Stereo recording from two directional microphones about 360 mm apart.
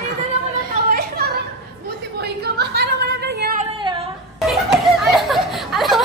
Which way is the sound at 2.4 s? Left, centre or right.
Right.